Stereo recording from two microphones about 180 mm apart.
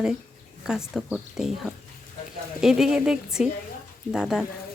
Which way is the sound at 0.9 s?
5° right (ahead or behind).